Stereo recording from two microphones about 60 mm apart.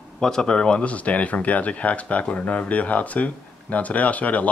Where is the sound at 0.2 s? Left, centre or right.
Centre.